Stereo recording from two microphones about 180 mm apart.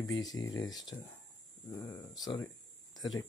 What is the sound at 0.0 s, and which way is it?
Speech, 20° left (ahead or behind).